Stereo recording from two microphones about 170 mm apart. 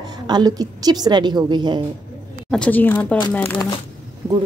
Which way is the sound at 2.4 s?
5° left (ahead or behind).